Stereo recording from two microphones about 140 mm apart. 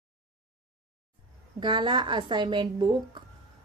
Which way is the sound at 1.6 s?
35° right (ahead or behind).